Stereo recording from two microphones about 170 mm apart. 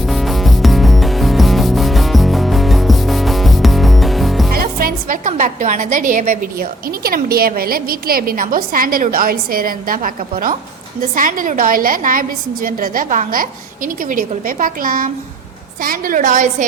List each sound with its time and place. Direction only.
0.1 s music: centre (ahead or behind)
4.5 s a woman's voice: 60° right (ahead or behind)